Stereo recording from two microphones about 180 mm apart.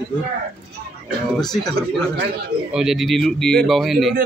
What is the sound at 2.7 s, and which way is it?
A man's voice, centre (ahead or behind).